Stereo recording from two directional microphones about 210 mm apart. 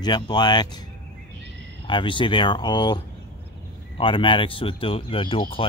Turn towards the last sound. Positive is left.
turn(degrees=25)  # may be behind; listen again after turning